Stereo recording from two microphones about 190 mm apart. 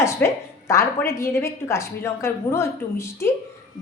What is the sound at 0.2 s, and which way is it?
A woman's voice, 10° left (ahead or behind).